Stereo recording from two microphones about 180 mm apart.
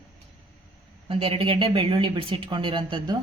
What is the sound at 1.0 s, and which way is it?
Speech, 30° right (ahead or behind).